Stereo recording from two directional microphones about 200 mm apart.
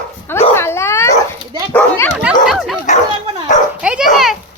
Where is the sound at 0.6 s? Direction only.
10° left (ahead or behind).